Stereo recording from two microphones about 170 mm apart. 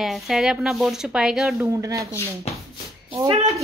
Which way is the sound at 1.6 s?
15° right (ahead or behind).